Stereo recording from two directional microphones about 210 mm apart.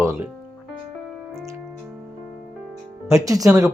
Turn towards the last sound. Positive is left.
turn(degrees=-15)  # may be behind; listen again after turning